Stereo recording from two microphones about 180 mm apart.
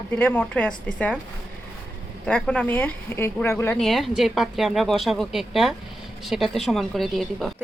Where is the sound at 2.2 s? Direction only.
5° left (ahead or behind).